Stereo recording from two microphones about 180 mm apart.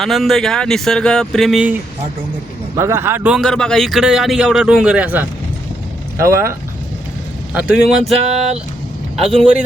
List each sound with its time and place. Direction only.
0.0 s speech: centre (ahead or behind)
2.7 s speech: 15° right (ahead or behind)
3.4 s speech: 5° left (ahead or behind); by 6.6 s 15° right (ahead or behind)
7.5 s speech: 5° right (ahead or behind)
8.1 s a sound: 35° right (ahead or behind)